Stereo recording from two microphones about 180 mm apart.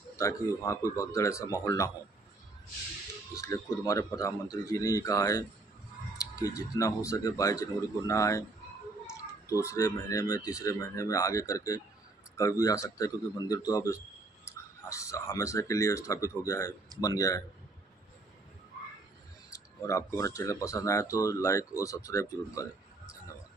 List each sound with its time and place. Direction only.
0.2 s speech: 15° left (ahead or behind)
3.3 s a man's voice: 15° left (ahead or behind)
19.5 s speech: 15° left (ahead or behind)